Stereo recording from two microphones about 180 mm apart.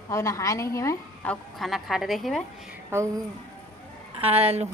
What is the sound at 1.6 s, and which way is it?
Speech, centre (ahead or behind).